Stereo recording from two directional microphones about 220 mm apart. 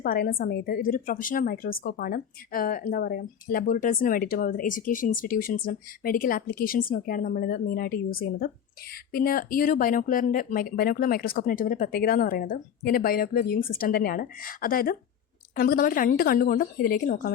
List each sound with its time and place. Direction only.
0.0 s a woman's voice: 40° left (ahead or behind)